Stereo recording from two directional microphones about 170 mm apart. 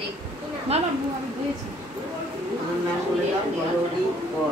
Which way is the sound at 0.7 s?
35° right (ahead or behind).